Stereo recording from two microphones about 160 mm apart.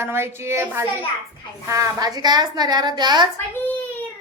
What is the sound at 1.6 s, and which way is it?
Child singing, 20° right (ahead or behind).